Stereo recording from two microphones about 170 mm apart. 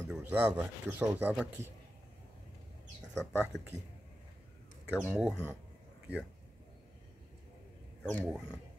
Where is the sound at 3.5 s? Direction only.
90° right.